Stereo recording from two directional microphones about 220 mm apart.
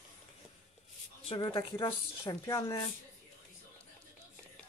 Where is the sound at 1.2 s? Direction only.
20° left (ahead or behind).